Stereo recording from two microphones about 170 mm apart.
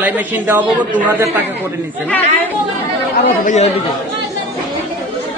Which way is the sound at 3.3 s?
45° left (ahead or behind).